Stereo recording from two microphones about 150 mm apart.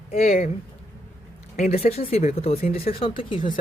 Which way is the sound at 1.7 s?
45° left (ahead or behind).